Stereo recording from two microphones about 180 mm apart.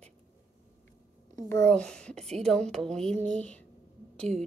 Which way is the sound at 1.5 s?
5° left (ahead or behind).